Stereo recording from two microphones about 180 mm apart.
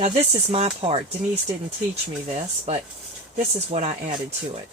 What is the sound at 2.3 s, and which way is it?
Speech, 35° right (ahead or behind).